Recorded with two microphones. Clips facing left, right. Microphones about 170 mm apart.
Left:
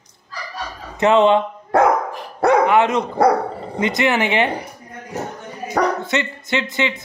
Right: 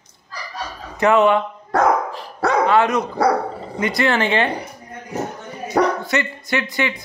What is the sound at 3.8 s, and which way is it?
Speech, 20° left (ahead or behind).